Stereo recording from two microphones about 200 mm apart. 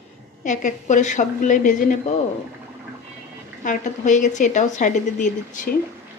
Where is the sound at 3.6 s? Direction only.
40° left (ahead or behind).